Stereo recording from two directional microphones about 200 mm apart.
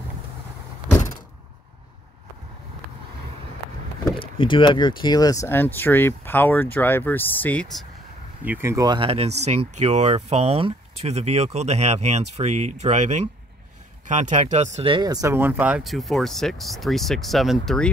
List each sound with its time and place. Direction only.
4.2 s speech: 25° left (ahead or behind); by 7.6 s 10° left (ahead or behind)
8.5 s speech: 10° right (ahead or behind)